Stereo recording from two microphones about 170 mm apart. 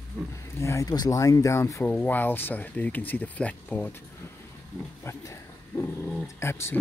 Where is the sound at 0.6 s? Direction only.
20° left (ahead or behind).